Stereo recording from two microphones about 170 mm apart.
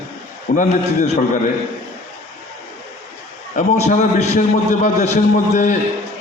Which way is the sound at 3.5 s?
45° left (ahead or behind).